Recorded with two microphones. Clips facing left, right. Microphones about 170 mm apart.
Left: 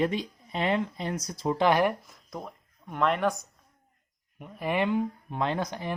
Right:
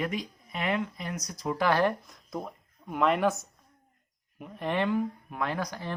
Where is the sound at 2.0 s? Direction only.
Centre (ahead or behind).